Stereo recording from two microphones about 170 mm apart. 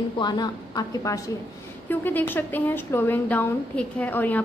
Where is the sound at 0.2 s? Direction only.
25° left (ahead or behind).